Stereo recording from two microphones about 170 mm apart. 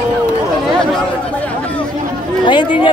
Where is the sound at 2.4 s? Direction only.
25° left (ahead or behind).